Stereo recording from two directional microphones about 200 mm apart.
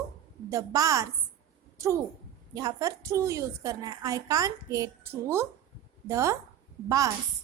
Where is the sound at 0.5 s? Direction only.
15° right (ahead or behind).